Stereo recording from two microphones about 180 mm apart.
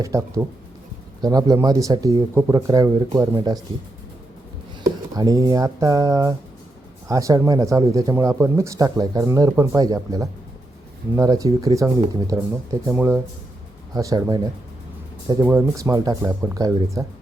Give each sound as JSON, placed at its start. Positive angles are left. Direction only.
{"t": 0.0, "sound": "speech", "side_deg": -15}
{"t": 5.1, "sound": "speech", "side_deg": -20}
{"t": 15.4, "sound": "speech", "side_deg": -15}